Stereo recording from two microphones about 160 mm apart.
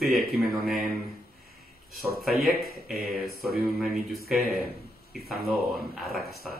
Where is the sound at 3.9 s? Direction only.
70° right (ahead or behind).